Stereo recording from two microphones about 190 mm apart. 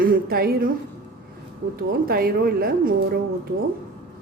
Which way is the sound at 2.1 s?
50° right (ahead or behind).